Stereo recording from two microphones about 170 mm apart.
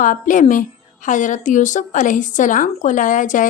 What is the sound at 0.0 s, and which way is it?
A woman's voice, 50° left (ahead or behind).